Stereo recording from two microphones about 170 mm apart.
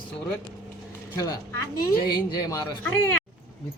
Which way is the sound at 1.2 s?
20° left (ahead or behind).